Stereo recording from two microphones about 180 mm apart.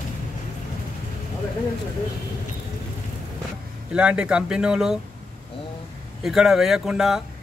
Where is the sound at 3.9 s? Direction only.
5° right (ahead or behind).